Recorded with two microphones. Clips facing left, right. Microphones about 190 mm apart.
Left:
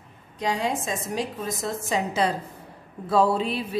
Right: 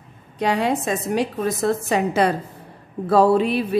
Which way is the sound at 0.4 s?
65° right (ahead or behind).